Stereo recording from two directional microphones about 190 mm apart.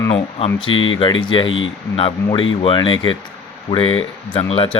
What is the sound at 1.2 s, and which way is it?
Speech, 25° left (ahead or behind).